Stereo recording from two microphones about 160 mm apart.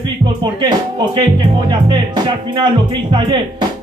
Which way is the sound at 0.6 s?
25° right (ahead or behind).